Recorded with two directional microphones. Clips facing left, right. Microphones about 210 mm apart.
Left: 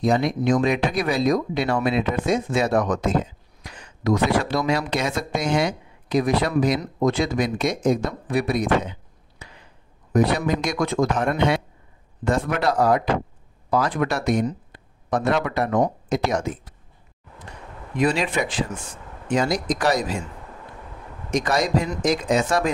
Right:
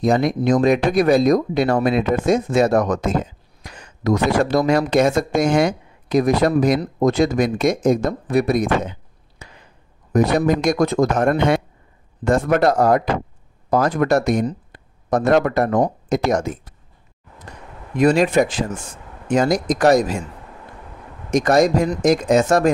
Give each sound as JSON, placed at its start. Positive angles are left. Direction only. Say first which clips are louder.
{"t": 0.0, "sound": "speech", "louder": "right 3 dB", "side_deg": -45}
{"t": 9.4, "sound": "a sound", "louder": "right 2 dB", "side_deg": -45}
{"t": 10.1, "sound": "speech", "louder": "right 4 dB", "side_deg": -45}
{"t": 17.9, "sound": "speech", "louder": "right 7 dB", "side_deg": -45}
{"t": 21.3, "sound": "speech", "louder": "right 7 dB", "side_deg": -45}